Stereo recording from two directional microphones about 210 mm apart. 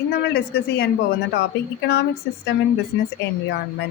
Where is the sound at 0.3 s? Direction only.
50° left (ahead or behind).